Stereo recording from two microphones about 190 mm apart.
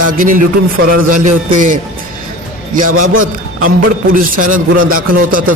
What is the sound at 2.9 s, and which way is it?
Speech, 90° right.